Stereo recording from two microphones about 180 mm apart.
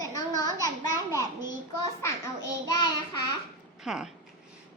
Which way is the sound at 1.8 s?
20° left (ahead or behind).